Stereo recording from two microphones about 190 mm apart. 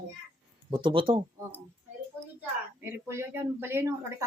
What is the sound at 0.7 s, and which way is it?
Speech, 25° right (ahead or behind).